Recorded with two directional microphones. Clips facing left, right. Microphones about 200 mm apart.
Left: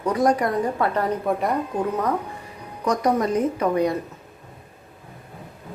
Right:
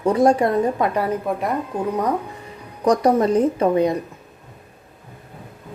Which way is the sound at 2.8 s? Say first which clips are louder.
Right 5 dB; 30° right (ahead or behind).